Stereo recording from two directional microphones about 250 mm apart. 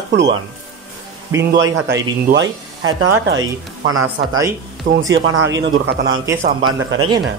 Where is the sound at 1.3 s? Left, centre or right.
Centre.